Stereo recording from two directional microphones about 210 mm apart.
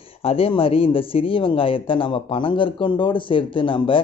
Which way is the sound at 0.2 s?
25° left (ahead or behind).